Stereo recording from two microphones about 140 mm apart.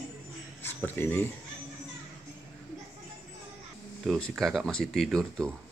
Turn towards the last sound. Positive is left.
turn(degrees=0)  # may be behind; listen again after turning